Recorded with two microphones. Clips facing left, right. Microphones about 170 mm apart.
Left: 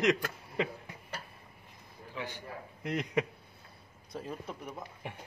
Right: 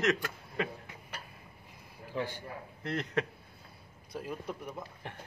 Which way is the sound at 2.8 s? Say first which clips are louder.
Left 1 dB; 10° left (ahead or behind).